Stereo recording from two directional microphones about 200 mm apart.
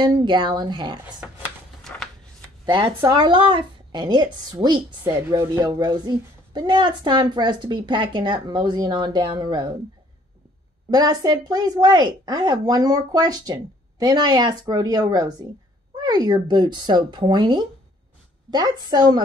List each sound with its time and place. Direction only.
0.0 s a woman's voice: 20° right (ahead or behind)
2.6 s a woman's voice: 25° right (ahead or behind)
10.9 s a woman's voice: 20° right (ahead or behind)